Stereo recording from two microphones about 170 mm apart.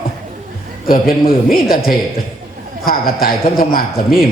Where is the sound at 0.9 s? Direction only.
60° left (ahead or behind).